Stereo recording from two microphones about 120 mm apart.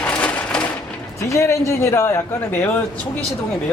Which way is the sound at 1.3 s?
25° left (ahead or behind).